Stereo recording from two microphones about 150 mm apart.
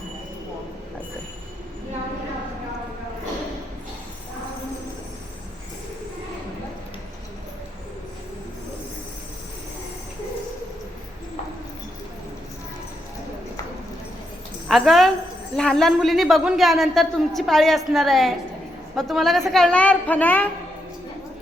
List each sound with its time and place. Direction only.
14.7 s a woman's voice: centre (ahead or behind)